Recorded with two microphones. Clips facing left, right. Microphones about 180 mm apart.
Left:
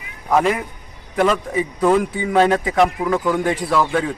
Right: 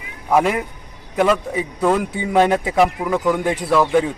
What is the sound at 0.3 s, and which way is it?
Speech, 5° right (ahead or behind).